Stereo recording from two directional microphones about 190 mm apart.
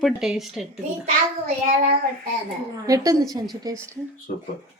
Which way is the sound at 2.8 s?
15° right (ahead or behind).